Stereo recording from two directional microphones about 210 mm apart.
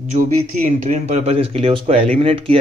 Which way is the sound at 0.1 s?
35° right (ahead or behind).